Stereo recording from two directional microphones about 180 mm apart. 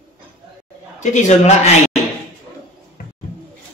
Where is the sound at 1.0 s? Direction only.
40° left (ahead or behind).